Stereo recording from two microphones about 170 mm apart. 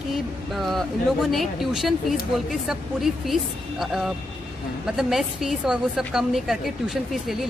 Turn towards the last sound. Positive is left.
turn(degrees=0)  # may be behind; listen again after turning